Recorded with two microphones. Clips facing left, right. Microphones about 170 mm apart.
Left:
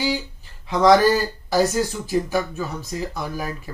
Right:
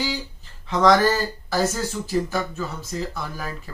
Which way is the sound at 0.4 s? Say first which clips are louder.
Even; 15° left (ahead or behind).